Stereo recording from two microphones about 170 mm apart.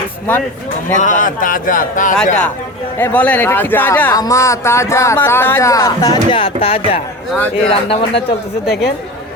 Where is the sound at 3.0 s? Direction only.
10° left (ahead or behind); by 8.0 s 35° left (ahead or behind).